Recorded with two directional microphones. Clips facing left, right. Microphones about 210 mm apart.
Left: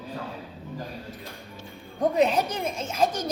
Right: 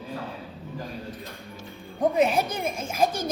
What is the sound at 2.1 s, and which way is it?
Speech, 10° right (ahead or behind).